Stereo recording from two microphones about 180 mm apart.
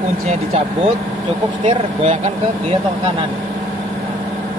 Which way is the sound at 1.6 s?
30° right (ahead or behind).